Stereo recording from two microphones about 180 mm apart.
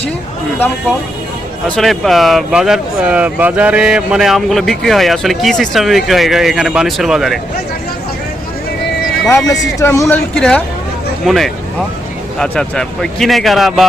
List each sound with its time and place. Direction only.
1.6 s speech: 5° left (ahead or behind)
9.3 s speech: 15° left (ahead or behind); by 13.8 s centre (ahead or behind)